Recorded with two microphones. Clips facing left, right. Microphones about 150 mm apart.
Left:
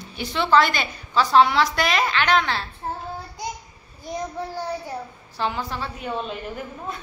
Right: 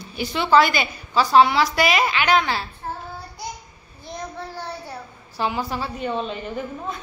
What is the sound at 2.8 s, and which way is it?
Child singing, 25° left (ahead or behind).